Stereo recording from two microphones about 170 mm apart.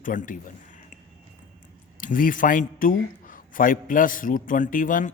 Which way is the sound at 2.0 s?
50° left (ahead or behind).